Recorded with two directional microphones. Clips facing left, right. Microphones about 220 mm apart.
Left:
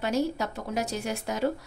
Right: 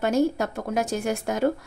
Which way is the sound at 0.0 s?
50° right (ahead or behind).